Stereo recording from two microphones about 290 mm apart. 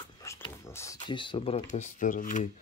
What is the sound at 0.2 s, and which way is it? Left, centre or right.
Speech, centre.